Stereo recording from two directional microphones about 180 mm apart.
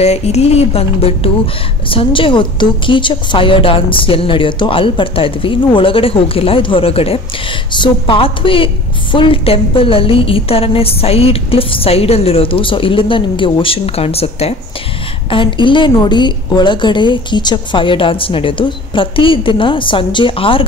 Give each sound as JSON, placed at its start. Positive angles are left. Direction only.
{"t": 0.0, "sound": "a woman's voice", "side_deg": 35}